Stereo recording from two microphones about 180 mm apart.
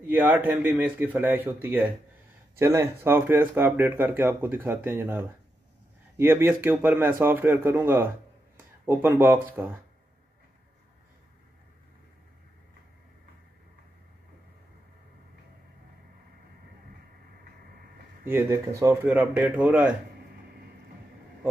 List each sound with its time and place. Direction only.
0.1 s speech: 10° right (ahead or behind)
18.3 s speech: 15° right (ahead or behind)